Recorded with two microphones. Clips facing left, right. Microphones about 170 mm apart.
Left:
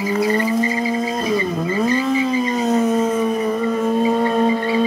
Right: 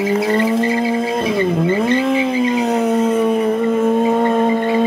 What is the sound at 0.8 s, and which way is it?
Music, 65° right (ahead or behind).